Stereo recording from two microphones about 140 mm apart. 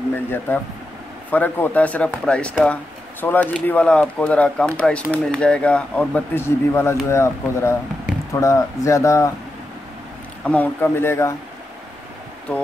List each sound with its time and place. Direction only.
0.5 s speech: 15° left (ahead or behind)
10.4 s speech: 10° left (ahead or behind)
12.5 s speech: 10° left (ahead or behind)